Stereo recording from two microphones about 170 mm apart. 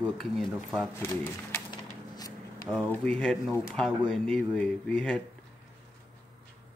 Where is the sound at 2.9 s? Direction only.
5° left (ahead or behind).